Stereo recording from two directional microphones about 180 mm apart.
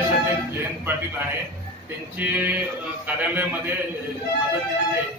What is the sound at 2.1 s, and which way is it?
A man's voice, 10° right (ahead or behind).